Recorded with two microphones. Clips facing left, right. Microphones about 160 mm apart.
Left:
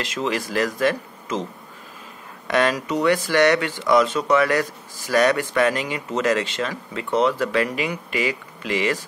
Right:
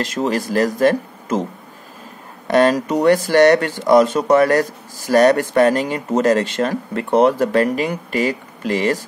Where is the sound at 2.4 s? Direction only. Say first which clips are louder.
Right 6 dB; 40° right (ahead or behind).